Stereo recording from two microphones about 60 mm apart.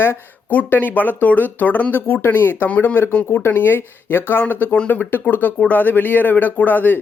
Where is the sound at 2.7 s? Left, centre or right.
Left.